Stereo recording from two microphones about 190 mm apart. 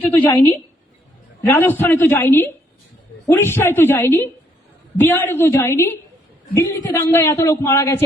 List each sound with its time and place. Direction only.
0.1 s a man's voice: 10° left (ahead or behind)
1.5 s a man's voice: 10° left (ahead or behind)